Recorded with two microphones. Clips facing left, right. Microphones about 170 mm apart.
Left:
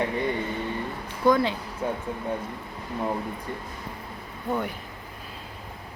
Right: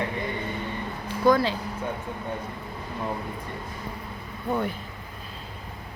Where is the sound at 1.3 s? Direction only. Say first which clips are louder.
Even; 20° left (ahead or behind).